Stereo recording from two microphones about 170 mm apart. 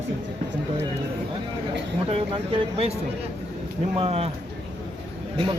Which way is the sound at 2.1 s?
35° right (ahead or behind).